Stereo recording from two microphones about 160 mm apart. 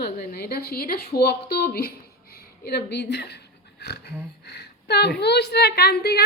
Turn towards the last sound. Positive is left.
turn(degrees=90)